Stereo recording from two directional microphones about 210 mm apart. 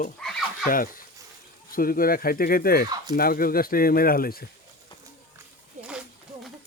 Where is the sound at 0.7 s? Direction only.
40° left (ahead or behind).